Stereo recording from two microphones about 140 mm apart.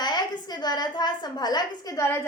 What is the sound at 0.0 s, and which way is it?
A woman's voice, 30° left (ahead or behind).